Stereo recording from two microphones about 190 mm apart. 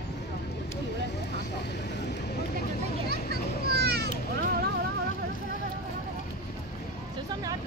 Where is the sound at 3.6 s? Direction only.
55° right (ahead or behind).